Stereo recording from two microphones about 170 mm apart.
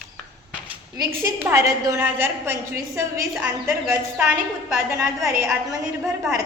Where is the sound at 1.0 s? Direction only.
15° right (ahead or behind).